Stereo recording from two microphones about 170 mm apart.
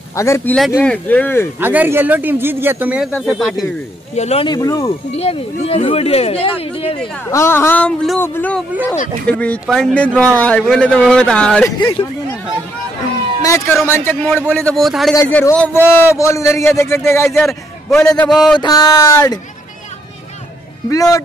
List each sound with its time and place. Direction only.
0.1 s a man's voice: 15° left (ahead or behind)
1.6 s a man's voice: 10° right (ahead or behind)
3.1 s a man's voice: 5° left (ahead or behind)
4.1 s speech: 40° left (ahead or behind)
4.5 s speech: 20° left (ahead or behind)
4.8 s speech: 35° left (ahead or behind)
7.2 s a man's voice: 15° left (ahead or behind)
13.4 s a man's voice: 20° left (ahead or behind)
14.2 s a man's voice: centre (ahead or behind)
15.1 s a man's voice: 15° left (ahead or behind)
17.8 s a man's voice: 5° left (ahead or behind)
18.6 s speech: 25° left (ahead or behind)
20.9 s speech: 20° left (ahead or behind)